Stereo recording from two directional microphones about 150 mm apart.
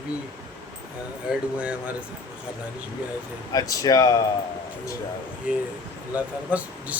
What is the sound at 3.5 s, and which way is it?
Speech, 25° left (ahead or behind).